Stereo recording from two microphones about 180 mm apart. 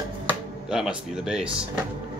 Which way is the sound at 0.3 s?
5° right (ahead or behind).